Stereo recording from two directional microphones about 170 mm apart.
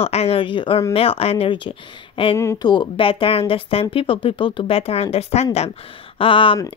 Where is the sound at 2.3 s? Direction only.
20° left (ahead or behind).